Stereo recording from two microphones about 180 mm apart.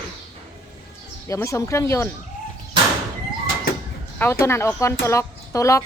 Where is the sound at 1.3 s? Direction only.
15° left (ahead or behind).